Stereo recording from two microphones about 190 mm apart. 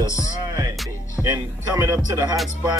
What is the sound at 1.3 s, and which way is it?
Speech, 15° right (ahead or behind).